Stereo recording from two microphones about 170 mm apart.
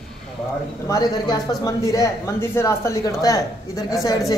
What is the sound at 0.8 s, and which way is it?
Speech, 20° left (ahead or behind).